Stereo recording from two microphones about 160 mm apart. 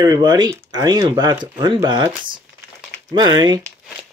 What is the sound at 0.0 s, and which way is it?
Speech, 25° right (ahead or behind).